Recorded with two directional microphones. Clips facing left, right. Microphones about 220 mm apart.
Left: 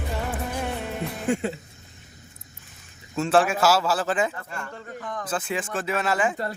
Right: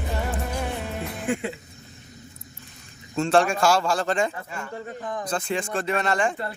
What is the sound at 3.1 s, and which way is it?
A man's voice, 5° left (ahead or behind).